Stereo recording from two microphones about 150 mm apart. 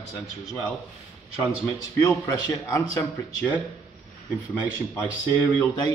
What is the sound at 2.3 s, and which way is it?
Speech, 25° left (ahead or behind).